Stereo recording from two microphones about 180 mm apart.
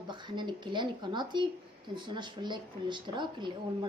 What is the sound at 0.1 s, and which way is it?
Speech, 25° right (ahead or behind).